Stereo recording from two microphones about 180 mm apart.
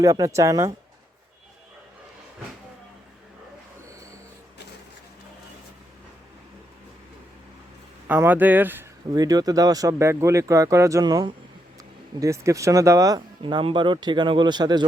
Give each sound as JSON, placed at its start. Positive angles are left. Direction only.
{"t": 0.0, "sound": "speech", "side_deg": -15}
{"t": 8.0, "sound": "speech", "side_deg": -10}